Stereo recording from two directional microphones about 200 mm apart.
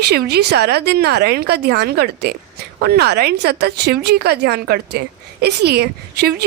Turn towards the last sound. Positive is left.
turn(degrees=-55)  # may be behind; listen again after turning